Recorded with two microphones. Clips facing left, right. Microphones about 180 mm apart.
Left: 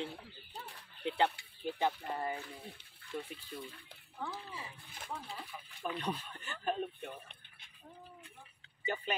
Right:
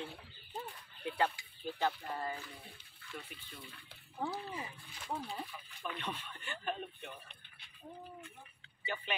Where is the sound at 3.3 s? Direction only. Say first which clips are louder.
Left 5 dB; 30° left (ahead or behind).